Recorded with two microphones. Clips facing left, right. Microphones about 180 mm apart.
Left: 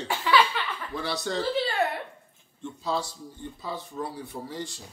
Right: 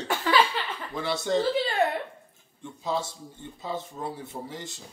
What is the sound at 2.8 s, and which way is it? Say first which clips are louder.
Speech: even; 20° right (ahead or behind).